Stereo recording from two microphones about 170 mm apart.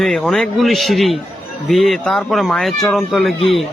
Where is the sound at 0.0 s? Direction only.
Centre (ahead or behind).